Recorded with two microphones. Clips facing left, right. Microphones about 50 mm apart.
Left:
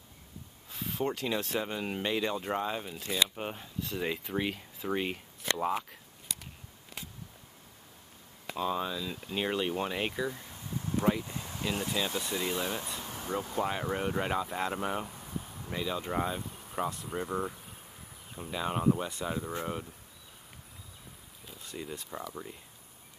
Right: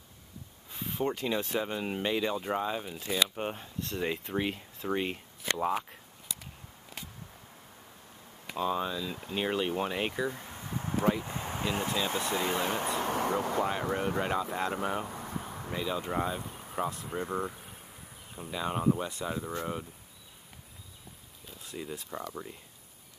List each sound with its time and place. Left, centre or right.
0.7 s speech: centre
8.5 s speech: centre
10.4 s a sound: right
12.4 s speech: right
12.8 s speech: right
13.6 s speech: centre
15.0 s a sound: right
15.7 s speech: centre
21.5 s speech: centre